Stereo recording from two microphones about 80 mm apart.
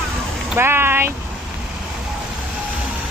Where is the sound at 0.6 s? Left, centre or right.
Right.